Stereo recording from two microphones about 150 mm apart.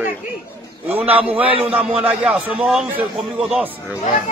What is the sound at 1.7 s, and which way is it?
A man's voice, 10° right (ahead or behind).